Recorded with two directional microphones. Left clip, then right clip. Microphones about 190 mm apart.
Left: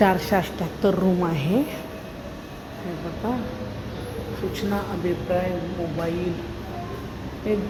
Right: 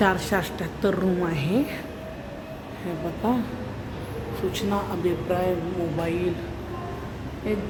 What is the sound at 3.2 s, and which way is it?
Speech, 20° right (ahead or behind).